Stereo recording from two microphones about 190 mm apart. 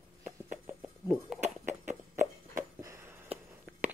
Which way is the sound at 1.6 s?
40° right (ahead or behind).